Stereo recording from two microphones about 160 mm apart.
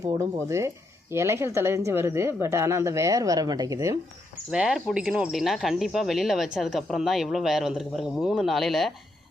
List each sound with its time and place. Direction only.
0.0 s speech: 20° right (ahead or behind)
4.5 s speech: 5° right (ahead or behind)